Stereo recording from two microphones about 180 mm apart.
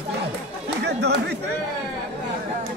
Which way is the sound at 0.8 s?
65° right (ahead or behind).